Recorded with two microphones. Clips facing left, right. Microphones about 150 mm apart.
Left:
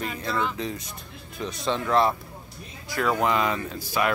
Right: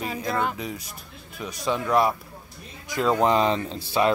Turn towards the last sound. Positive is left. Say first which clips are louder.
# right 3 dB
turn(degrees=-25)  # may be behind; listen again after turning